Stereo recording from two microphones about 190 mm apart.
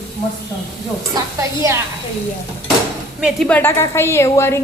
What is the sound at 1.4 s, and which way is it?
Speech, 15° right (ahead or behind).